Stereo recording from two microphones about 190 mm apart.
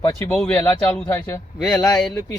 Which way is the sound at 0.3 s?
5° left (ahead or behind).